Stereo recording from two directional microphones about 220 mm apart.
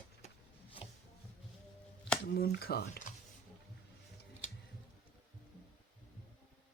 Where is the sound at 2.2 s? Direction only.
45° left (ahead or behind).